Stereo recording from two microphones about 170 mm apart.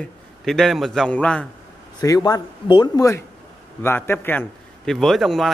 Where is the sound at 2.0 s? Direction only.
20° left (ahead or behind).